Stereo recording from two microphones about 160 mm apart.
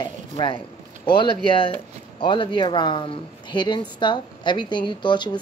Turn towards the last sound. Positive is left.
turn(degrees=30)  # may be behind; listen again after turning